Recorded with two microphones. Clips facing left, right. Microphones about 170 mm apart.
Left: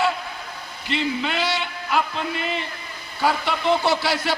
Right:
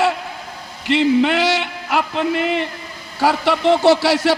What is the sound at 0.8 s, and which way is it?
A man's voice, 80° right.